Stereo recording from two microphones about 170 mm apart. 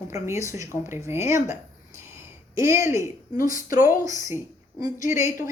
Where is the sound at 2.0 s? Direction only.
15° right (ahead or behind).